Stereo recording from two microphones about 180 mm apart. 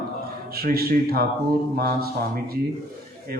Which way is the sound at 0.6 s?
55° right (ahead or behind).